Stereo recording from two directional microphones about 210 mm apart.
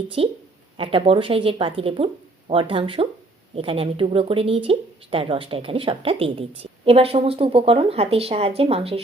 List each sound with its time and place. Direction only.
0.2 s speech: 25° right (ahead or behind)